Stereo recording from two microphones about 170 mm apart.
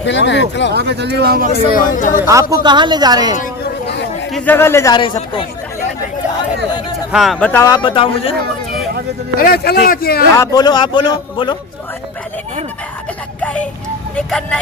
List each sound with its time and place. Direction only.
0.0 s speech: 90° left
0.7 s speech: 80° right
1.9 s speech: 50° left (ahead or behind)
2.2 s speech: 20° right (ahead or behind)
4.4 s speech: 10° left (ahead or behind)
7.1 s speech: centre (ahead or behind)
7.7 s speech: 30° left (ahead or behind)
9.4 s speech: 60° left (ahead or behind)
10.3 s a man's voice: 20° left (ahead or behind)
13.4 s music: 5° left (ahead or behind)
14.2 s speech: 5° left (ahead or behind)